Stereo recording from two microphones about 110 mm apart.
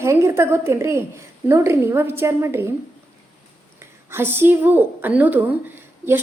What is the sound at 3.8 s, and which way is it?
A woman's voice, 20° right (ahead or behind).